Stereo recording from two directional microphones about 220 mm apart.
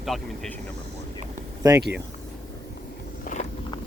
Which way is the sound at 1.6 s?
15° right (ahead or behind).